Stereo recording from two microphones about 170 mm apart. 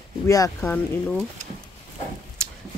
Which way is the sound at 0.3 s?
15° left (ahead or behind).